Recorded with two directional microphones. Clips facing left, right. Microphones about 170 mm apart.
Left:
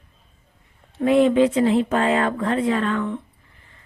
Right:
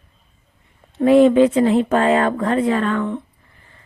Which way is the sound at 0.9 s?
40° right (ahead or behind).